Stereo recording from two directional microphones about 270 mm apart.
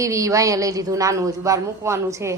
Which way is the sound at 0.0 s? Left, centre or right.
Centre.